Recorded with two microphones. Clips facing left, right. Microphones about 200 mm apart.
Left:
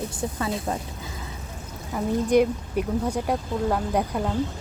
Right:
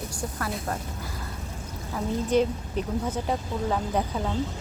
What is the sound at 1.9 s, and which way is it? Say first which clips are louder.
Speech: left 4 dB; 10° left (ahead or behind).